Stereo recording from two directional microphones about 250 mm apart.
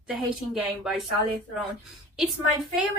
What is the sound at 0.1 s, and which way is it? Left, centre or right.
Speech, centre.